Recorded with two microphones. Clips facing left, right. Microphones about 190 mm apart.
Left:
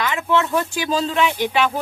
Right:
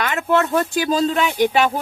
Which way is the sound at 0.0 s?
45° right (ahead or behind).